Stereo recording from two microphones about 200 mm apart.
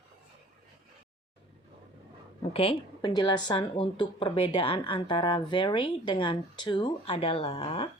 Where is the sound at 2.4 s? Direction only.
30° left (ahead or behind).